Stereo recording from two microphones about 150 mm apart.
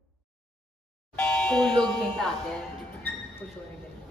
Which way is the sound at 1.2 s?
10° left (ahead or behind).